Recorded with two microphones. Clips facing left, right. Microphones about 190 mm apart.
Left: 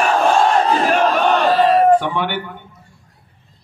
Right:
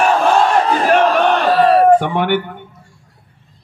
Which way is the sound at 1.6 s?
40° right (ahead or behind).